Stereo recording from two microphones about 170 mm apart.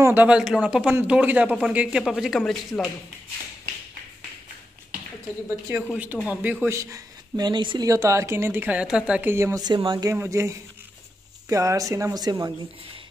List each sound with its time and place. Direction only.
0.0 s speech: 10° right (ahead or behind)
5.9 s speech: 10° right (ahead or behind)